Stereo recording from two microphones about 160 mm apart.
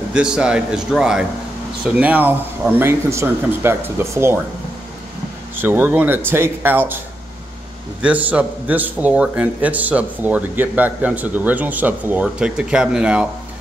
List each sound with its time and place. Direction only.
0.1 s a man's voice: 5° right (ahead or behind)
5.6 s a man's voice: 10° right (ahead or behind)
8.0 s a man's voice: 10° right (ahead or behind)